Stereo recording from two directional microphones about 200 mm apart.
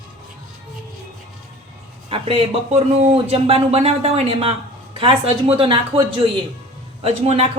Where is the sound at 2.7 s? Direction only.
30° right (ahead or behind).